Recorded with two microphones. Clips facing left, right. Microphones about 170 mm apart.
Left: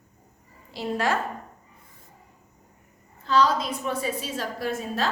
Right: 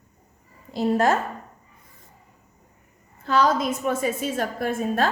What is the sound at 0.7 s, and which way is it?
Speech, 45° right (ahead or behind).